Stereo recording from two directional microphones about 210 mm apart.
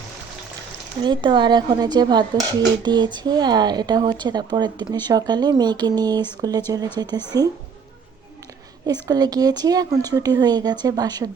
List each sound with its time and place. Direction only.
1.0 s speech: 20° right (ahead or behind)
8.9 s speech: 20° right (ahead or behind)